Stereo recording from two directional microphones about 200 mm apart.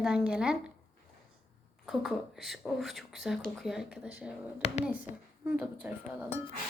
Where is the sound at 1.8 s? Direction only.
Centre (ahead or behind).